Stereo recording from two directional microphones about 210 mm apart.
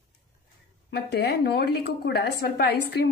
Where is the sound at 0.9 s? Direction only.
50° left (ahead or behind).